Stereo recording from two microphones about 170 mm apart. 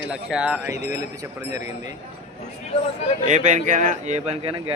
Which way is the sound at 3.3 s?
45° right (ahead or behind).